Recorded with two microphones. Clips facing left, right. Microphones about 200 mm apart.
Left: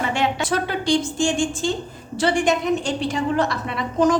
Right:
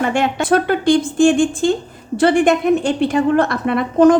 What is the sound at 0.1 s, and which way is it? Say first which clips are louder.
A woman's voice: right 6 dB; 50° right (ahead or behind).